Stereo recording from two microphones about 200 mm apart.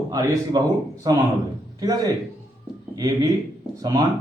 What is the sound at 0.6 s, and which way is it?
A man's voice, 20° right (ahead or behind).